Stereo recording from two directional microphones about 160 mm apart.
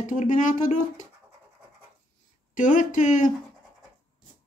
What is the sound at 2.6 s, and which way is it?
Speech, 55° left (ahead or behind).